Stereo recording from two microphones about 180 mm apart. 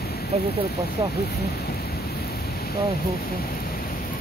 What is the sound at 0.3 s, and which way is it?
Speech, 35° right (ahead or behind).